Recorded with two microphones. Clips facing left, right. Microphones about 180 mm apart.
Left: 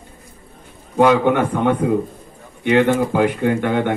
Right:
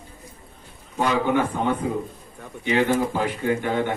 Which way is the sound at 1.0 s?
65° left (ahead or behind).